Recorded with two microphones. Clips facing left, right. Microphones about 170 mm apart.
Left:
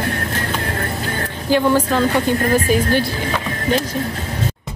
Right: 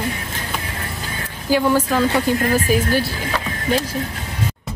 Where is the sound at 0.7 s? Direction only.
55° left (ahead or behind).